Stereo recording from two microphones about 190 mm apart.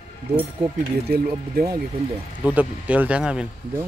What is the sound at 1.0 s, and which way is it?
Speech, 55° right (ahead or behind).